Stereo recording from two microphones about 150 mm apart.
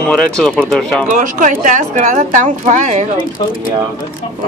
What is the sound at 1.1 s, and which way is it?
A woman's voice, 60° right (ahead or behind).